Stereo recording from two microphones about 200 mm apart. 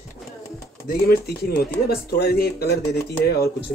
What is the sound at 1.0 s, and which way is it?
Speech, 50° left (ahead or behind).